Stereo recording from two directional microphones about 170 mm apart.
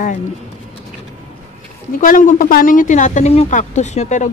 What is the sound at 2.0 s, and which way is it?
Speech, 50° left (ahead or behind).